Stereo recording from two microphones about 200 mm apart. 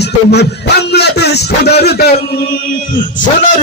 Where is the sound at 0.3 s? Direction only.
55° left (ahead or behind).